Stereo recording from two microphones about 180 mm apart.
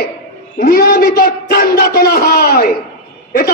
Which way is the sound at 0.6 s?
55° left (ahead or behind).